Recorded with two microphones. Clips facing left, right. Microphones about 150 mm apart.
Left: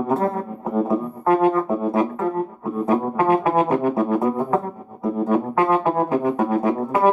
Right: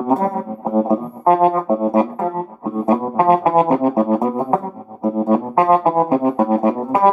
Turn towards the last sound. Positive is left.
turn(degrees=-30)  # may be behind; listen again after turning